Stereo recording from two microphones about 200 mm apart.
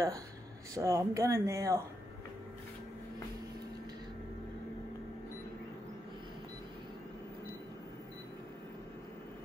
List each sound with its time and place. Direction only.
0.7 s speech: 15° right (ahead or behind)